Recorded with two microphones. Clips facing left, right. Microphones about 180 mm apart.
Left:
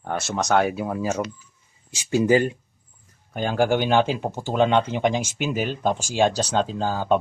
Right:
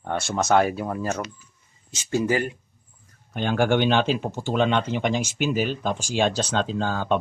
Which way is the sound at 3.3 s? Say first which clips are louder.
Even; 5° left (ahead or behind).